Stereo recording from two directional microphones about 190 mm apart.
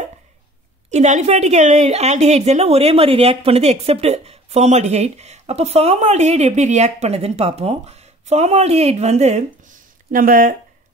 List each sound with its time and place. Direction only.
0.8 s a woman's voice: 40° right (ahead or behind)
10.1 s speech: 45° right (ahead or behind)